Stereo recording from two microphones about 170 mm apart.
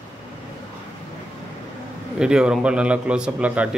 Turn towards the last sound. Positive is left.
turn(degrees=-5)  # may be behind; listen again after turning